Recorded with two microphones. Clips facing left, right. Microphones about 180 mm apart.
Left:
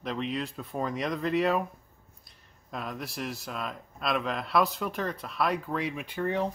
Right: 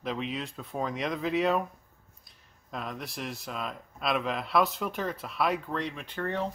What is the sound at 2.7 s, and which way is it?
Speech, centre (ahead or behind).